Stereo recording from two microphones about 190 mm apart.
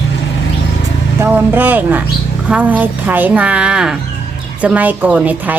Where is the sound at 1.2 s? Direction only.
10° right (ahead or behind).